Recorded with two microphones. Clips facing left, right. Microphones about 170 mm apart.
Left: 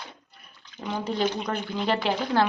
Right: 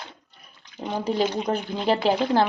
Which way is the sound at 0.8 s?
30° right (ahead or behind).